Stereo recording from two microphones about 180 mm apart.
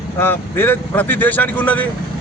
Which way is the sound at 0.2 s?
10° left (ahead or behind).